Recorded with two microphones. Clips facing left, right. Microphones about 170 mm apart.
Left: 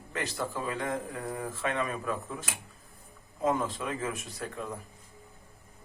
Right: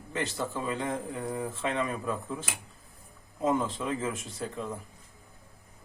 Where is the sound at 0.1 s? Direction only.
25° right (ahead or behind).